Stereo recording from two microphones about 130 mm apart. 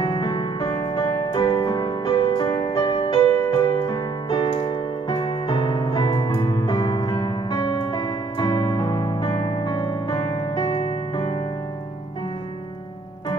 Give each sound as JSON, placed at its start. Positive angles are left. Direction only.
{"t": 0.0, "sound": "music", "side_deg": 35}